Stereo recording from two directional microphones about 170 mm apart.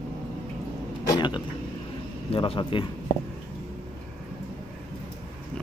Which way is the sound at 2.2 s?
30° left (ahead or behind).